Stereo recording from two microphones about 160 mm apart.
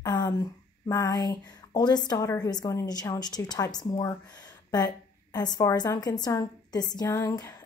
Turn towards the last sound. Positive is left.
turn(degrees=15)  # may be behind; listen again after turning